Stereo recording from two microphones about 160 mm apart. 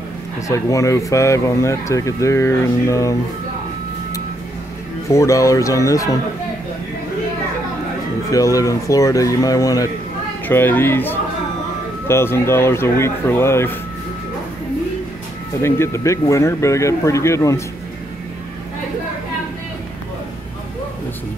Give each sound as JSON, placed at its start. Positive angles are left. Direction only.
{"t": 0.5, "sound": "speech", "side_deg": 20}
{"t": 5.1, "sound": "speech", "side_deg": 20}
{"t": 8.3, "sound": "speech", "side_deg": 20}
{"t": 15.6, "sound": "speech", "side_deg": 15}